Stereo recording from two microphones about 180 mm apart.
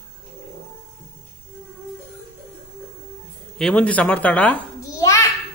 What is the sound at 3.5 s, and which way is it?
Speech, 5° left (ahead or behind).